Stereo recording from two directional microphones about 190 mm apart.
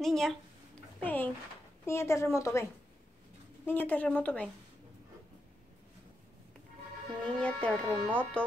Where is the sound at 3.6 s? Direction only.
10° left (ahead or behind).